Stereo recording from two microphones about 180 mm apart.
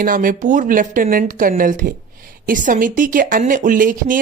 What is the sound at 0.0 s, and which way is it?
A woman's voice, 50° right (ahead or behind).